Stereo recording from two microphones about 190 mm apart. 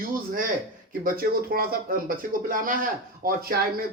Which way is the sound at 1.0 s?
50° right (ahead or behind).